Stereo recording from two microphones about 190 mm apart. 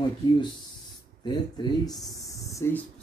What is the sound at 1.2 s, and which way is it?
Speech, 20° left (ahead or behind).